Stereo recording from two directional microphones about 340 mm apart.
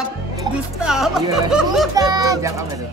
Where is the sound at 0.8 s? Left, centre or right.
Centre.